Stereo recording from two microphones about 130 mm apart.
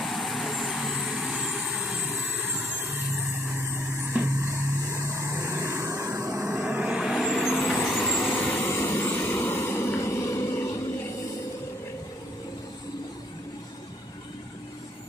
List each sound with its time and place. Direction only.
0.0 s vehicle: centre (ahead or behind); by 2.9 s 15° right (ahead or behind)
4.1 s vehicle: 15° right (ahead or behind); by 10.8 s 25° left (ahead or behind)